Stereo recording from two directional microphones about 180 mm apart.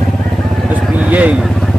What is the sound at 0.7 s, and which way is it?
Vehicle, 5° right (ahead or behind).